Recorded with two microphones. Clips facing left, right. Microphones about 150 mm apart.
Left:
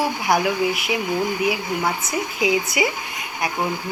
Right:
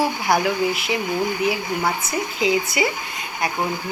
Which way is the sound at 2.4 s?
15° left (ahead or behind).